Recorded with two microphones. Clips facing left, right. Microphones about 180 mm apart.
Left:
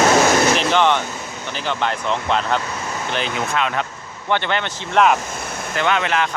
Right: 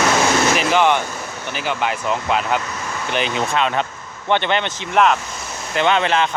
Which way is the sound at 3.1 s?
20° right (ahead or behind).